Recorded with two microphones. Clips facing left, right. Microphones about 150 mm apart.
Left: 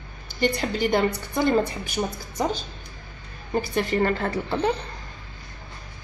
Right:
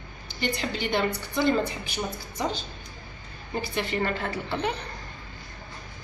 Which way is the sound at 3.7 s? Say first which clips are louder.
Left 5 dB; 40° left (ahead or behind).